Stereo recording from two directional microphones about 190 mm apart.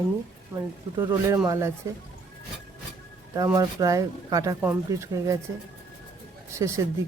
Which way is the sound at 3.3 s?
20° right (ahead or behind).